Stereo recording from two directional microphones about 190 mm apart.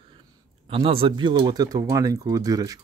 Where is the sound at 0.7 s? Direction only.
30° right (ahead or behind).